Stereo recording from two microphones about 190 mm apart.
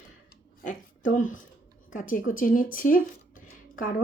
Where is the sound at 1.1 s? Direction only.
45° left (ahead or behind).